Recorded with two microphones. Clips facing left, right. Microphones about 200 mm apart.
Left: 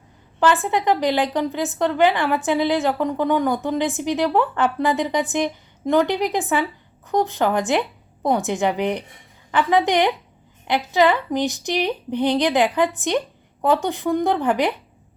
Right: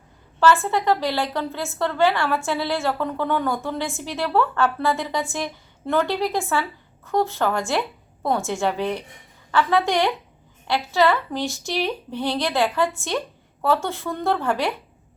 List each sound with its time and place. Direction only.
0.3 s a woman's voice: 15° left (ahead or behind)